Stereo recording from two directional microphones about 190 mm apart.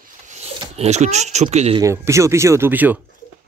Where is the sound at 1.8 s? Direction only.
15° right (ahead or behind).